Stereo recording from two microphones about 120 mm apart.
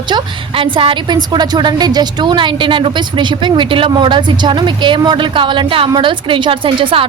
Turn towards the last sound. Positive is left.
turn(degrees=-45)  # may be behind; listen again after turning